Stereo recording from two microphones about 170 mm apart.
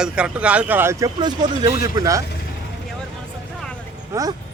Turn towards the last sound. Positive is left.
turn(degrees=-20)  # may be behind; listen again after turning